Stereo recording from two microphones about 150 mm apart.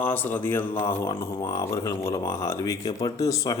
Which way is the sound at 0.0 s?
15° left (ahead or behind).